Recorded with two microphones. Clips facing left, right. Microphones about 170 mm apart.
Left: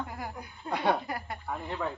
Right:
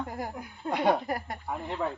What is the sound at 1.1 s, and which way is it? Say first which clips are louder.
Speech: right 4 dB; 40° right (ahead or behind).